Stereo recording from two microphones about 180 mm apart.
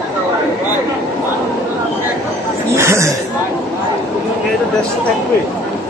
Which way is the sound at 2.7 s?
15° right (ahead or behind).